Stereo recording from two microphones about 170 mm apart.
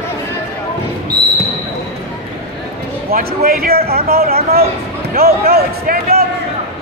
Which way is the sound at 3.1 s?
60° right (ahead or behind).